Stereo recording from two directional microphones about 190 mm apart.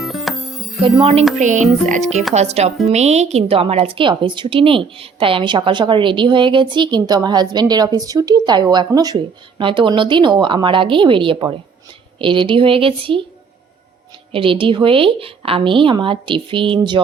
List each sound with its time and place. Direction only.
0.0 s music: centre (ahead or behind)
0.8 s a woman's voice: 30° right (ahead or behind)
1.4 s a woman's voice: 40° right (ahead or behind)
14.3 s a woman's voice: 30° right (ahead or behind)